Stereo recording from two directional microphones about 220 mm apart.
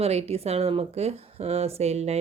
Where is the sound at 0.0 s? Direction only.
30° right (ahead or behind).